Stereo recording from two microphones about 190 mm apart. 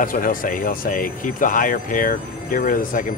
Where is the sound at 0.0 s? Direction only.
45° left (ahead or behind).